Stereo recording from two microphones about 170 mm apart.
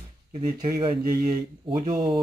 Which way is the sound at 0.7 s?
25° right (ahead or behind).